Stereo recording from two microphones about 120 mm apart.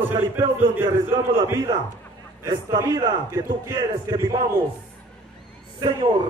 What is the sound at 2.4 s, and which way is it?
A man's voice, 30° right (ahead or behind).